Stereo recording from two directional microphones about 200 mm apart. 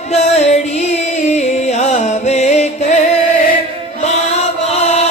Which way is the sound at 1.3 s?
35° left (ahead or behind).